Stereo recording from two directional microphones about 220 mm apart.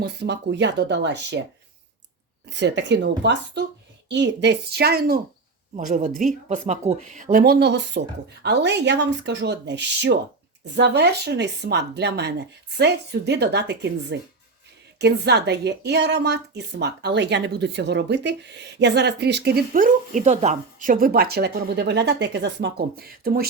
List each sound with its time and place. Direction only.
0.0 s a woman's voice: 50° right (ahead or behind)
2.5 s a woman's voice: 55° right (ahead or behind)